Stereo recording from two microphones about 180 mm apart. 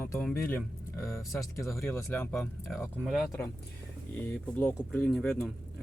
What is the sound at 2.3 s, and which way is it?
Speech, centre (ahead or behind).